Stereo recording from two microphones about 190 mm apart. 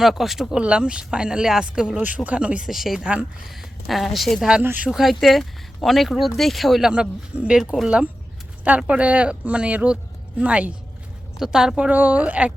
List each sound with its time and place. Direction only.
0.0 s speech: centre (ahead or behind)